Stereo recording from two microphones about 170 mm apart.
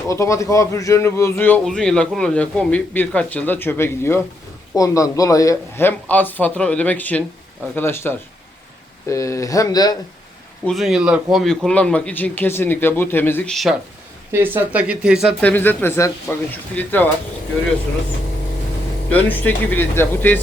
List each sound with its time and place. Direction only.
0.1 s speech: 20° left (ahead or behind)
10.7 s speech: centre (ahead or behind)
14.3 s speech: 10° right (ahead or behind)
15.4 s speech: 10° left (ahead or behind)
19.1 s speech: 10° left (ahead or behind)